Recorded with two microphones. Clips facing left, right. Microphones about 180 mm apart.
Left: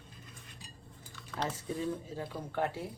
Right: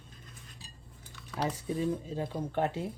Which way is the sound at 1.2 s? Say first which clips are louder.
Right 3 dB; 5° right (ahead or behind).